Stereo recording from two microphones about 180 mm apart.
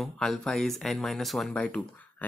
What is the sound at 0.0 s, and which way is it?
Speech, centre (ahead or behind).